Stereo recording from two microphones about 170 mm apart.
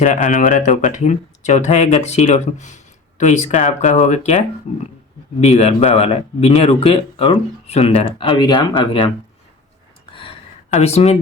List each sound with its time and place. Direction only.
0.0 s speech: 45° left (ahead or behind)
5.4 s speech: 40° left (ahead or behind)
10.1 s gasp: 30° left (ahead or behind)
10.8 s speech: 40° left (ahead or behind)